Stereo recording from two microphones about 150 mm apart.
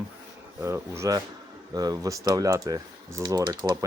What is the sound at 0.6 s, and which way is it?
Speech, 20° right (ahead or behind).